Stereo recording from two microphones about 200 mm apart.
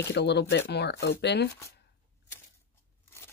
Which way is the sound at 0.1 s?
60° left (ahead or behind).